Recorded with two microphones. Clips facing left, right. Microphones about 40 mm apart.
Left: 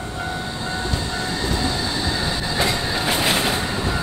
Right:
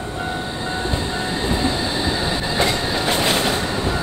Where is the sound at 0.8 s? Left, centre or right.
Right; by 2.7 s centre.